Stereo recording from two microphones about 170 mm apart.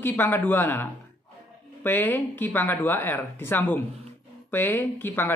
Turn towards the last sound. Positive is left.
turn(degrees=15)  # may be behind; listen again after turning